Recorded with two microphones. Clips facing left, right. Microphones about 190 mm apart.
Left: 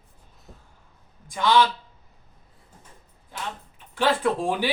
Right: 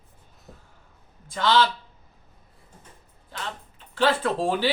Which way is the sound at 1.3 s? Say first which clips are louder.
Left 1 dB; 15° left (ahead or behind).